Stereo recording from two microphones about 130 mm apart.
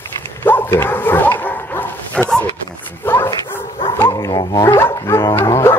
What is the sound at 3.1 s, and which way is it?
Dog, 20° left (ahead or behind).